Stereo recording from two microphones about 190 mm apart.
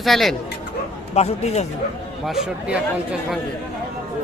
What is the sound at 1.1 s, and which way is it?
Speech, 35° left (ahead or behind).